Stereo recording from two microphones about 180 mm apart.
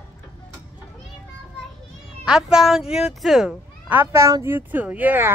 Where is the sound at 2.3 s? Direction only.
Centre (ahead or behind).